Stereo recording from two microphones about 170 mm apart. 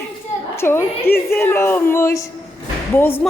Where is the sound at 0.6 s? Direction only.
15° left (ahead or behind).